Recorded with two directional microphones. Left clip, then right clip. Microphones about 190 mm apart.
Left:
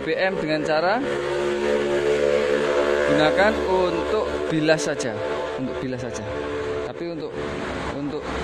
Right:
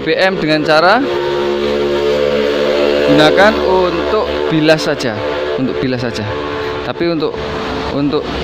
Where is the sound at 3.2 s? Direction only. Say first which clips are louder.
Right 10 dB; 10° right (ahead or behind).